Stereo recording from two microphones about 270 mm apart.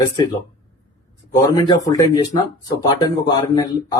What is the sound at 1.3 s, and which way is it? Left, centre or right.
Speech, centre.